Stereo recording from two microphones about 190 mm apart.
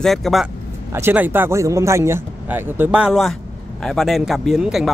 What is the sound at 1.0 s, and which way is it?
Speech, 10° right (ahead or behind).